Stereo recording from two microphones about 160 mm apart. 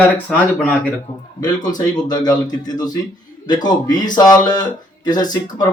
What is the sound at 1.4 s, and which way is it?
Speech, 25° left (ahead or behind).